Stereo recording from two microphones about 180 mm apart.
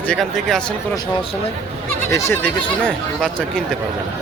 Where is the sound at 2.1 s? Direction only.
15° left (ahead or behind).